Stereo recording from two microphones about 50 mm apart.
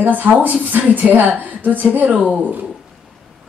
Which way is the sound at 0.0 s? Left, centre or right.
Right.